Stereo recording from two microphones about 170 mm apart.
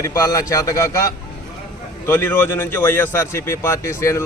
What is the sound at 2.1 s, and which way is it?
A man's voice, 10° left (ahead or behind).